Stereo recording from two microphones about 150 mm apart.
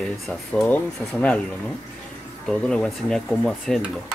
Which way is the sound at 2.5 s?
5° left (ahead or behind).